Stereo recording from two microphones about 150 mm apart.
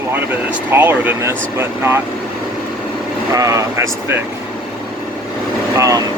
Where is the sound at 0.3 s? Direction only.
15° right (ahead or behind).